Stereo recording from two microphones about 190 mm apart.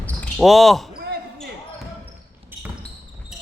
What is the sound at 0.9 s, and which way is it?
Basketball bounce, 55° right (ahead or behind).